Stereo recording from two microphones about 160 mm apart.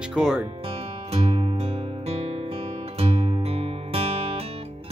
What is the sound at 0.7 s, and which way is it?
Music, 40° right (ahead or behind).